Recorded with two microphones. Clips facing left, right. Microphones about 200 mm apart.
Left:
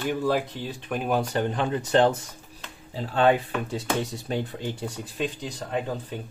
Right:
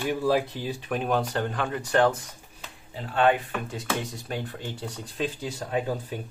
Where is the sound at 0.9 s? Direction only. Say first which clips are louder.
Left 1 dB; 5° left (ahead or behind).